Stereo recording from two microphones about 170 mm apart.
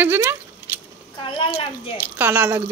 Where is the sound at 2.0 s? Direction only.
10° right (ahead or behind).